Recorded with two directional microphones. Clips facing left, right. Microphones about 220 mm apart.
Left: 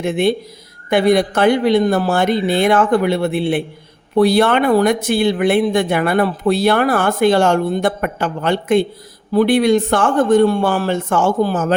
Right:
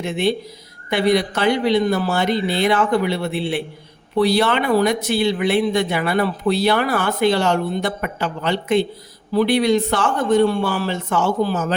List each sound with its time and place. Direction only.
0.0 s speech: 55° left (ahead or behind)